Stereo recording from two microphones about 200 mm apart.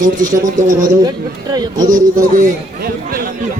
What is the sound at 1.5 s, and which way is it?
Speech, 20° right (ahead or behind).